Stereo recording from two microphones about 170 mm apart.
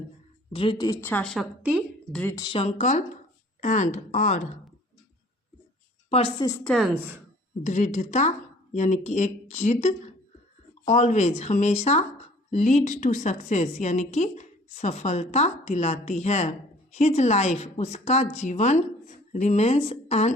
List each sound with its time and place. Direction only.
0.5 s speech: 30° left (ahead or behind)
1.0 s a woman's voice: 5° left (ahead or behind)
2.2 s speech: 20° left (ahead or behind)
2.5 s a woman's voice: 35° left (ahead or behind)
6.1 s a woman's voice: 40° left (ahead or behind)
6.7 s a woman's voice: centre (ahead or behind)
7.6 s a woman's voice: 45° left (ahead or behind)